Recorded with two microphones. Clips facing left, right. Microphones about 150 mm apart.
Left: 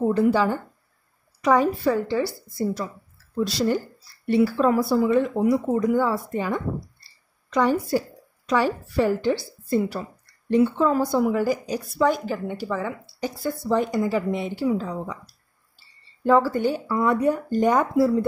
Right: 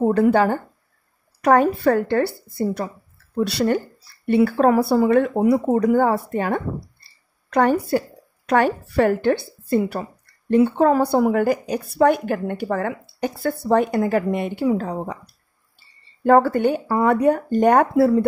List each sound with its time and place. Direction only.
0.1 s speech: 60° right (ahead or behind)
16.3 s speech: 60° right (ahead or behind)